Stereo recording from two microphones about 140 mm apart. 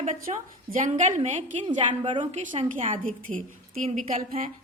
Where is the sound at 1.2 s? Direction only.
55° right (ahead or behind).